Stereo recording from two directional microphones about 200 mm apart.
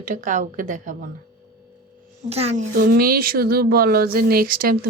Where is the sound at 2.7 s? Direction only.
45° right (ahead or behind).